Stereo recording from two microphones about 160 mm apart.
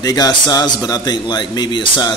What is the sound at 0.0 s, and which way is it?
A man's voice, 25° left (ahead or behind).